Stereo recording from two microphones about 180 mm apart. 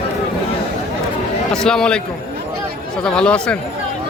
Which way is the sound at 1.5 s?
5° left (ahead or behind).